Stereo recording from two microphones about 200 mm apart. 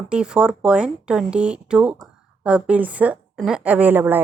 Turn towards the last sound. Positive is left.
turn(degrees=-10)  # may be behind; listen again after turning